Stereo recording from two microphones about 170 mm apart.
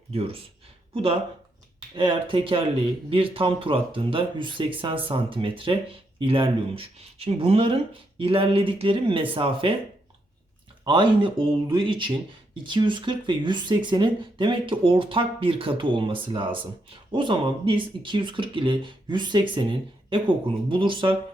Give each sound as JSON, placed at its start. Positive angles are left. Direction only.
{"t": 0.1, "sound": "speech", "side_deg": -35}
{"t": 2.0, "sound": "speech", "side_deg": -30}
{"t": 10.8, "sound": "speech", "side_deg": -30}